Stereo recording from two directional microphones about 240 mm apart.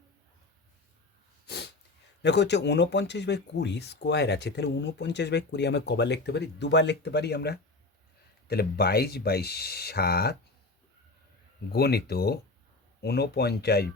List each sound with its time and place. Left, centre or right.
1.5 s sneeze: left
2.2 s speech: left
11.7 s speech: left